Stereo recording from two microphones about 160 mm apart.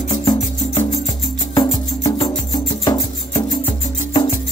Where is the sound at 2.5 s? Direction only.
20° left (ahead or behind).